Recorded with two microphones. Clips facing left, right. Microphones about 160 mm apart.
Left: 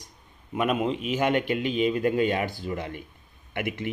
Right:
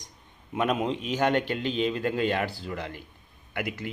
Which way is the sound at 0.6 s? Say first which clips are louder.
Left 1 dB; 5° left (ahead or behind).